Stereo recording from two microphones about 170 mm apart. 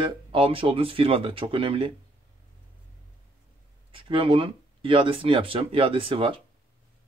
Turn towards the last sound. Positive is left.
turn(degrees=-30)  # may be behind; listen again after turning